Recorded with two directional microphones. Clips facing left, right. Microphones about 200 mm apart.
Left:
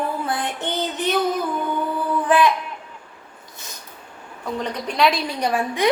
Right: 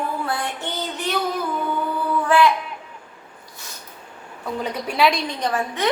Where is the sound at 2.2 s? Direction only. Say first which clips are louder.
Even; 20° left (ahead or behind).